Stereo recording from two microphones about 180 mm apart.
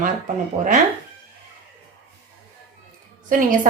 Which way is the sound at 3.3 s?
45° right (ahead or behind).